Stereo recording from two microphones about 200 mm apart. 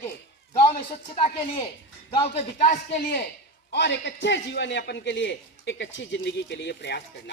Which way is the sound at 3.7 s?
60° left (ahead or behind).